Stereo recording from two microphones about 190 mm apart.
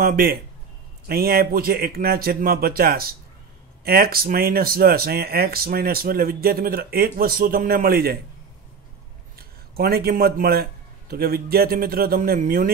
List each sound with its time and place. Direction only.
0.0 s speech: 50° right (ahead or behind)
9.8 s speech: 50° right (ahead or behind)